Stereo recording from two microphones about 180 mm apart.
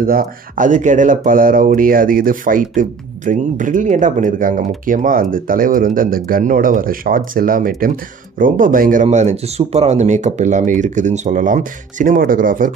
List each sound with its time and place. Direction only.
0.0 s speech: 50° right (ahead or behind)